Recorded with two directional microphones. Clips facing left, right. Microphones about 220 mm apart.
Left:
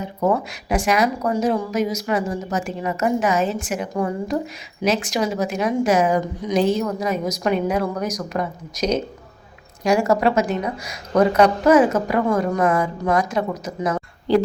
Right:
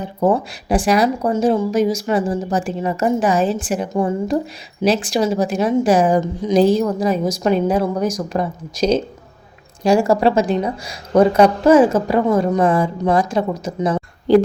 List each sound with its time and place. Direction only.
0.0 s a woman's voice: 30° right (ahead or behind)